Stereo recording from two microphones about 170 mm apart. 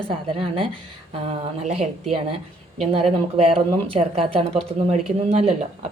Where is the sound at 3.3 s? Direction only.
35° right (ahead or behind).